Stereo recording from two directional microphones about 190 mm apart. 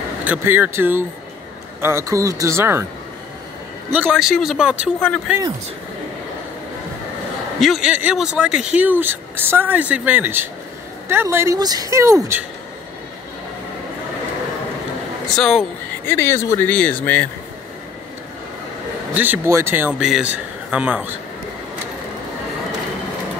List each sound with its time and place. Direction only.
0.2 s speech: 10° right (ahead or behind)
3.9 s a man's voice: 5° right (ahead or behind)
7.6 s speech: centre (ahead or behind)
15.3 s speech: centre (ahead or behind)
16.1 s speech: 10° left (ahead or behind)
19.1 s speech: 10° right (ahead or behind)